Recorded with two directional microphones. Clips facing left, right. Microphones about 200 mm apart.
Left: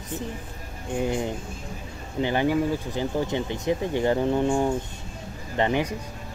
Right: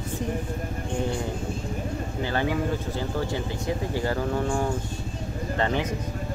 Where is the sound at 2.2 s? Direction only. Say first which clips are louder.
Left 5 dB; 15° left (ahead or behind).